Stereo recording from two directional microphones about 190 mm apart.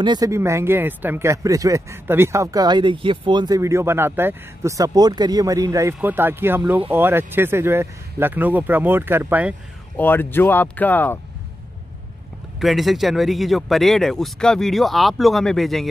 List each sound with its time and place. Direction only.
0.0 s speech: 20° right (ahead or behind)
9.9 s speech: 10° left (ahead or behind)
12.5 s speech: centre (ahead or behind)